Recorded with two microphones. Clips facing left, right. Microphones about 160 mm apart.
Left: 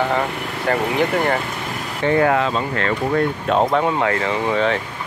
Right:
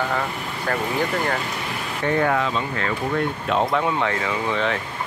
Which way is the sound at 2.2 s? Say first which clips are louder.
Left 4 dB; 55° left (ahead or behind).